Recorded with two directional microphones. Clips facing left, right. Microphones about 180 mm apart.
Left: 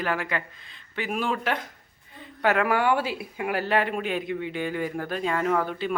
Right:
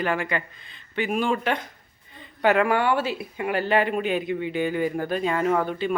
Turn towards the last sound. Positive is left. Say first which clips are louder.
# right 2 dB
turn(degrees=0)  # may be behind; listen again after turning